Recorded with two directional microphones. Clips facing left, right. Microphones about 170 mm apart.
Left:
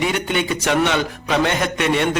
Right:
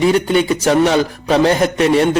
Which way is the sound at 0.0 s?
35° right (ahead or behind).